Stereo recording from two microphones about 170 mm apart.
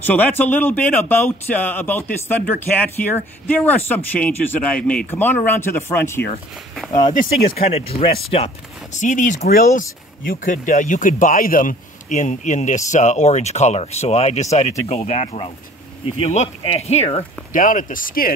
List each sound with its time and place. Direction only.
0.0 s speech: 10° left (ahead or behind)
7.5 s speech: 35° left (ahead or behind)
8.9 s speech: 50° left (ahead or behind)